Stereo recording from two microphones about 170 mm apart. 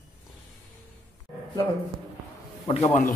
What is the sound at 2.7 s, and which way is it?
Speech, 40° left (ahead or behind).